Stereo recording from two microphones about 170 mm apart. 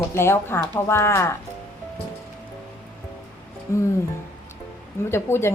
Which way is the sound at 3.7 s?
20° left (ahead or behind).